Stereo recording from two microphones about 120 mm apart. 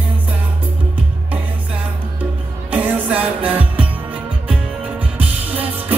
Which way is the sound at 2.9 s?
10° right (ahead or behind).